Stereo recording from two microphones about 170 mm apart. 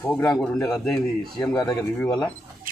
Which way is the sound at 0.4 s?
5° left (ahead or behind).